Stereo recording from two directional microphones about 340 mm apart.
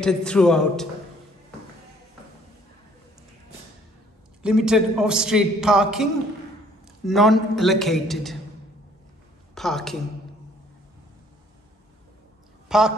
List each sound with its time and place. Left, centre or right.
0.0 s a man's voice: centre
4.4 s a man's voice: centre
7.1 s a man's voice: centre
9.6 s a woman's voice: centre
12.6 s a sound: centre